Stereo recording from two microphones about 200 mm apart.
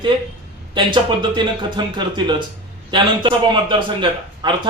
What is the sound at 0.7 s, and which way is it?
Speech, 25° right (ahead or behind).